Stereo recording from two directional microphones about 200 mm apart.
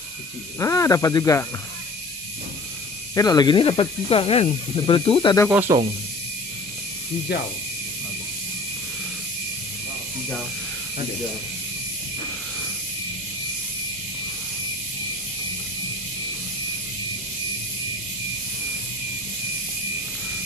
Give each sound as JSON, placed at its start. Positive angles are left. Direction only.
{"t": 0.6, "sound": "speech", "side_deg": 15}
{"t": 3.2, "sound": "speech", "side_deg": 20}
{"t": 5.5, "sound": "speech", "side_deg": -10}